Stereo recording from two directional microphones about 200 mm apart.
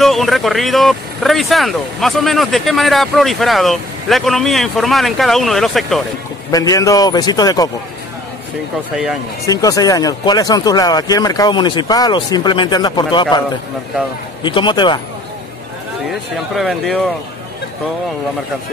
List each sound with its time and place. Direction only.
0.0 s speech: centre (ahead or behind)
6.5 s a man's voice: 15° left (ahead or behind)
8.9 s speech: 5° right (ahead or behind)
9.5 s speech: 15° left (ahead or behind)
14.4 s speech: 25° left (ahead or behind)
16.1 s speech: centre (ahead or behind)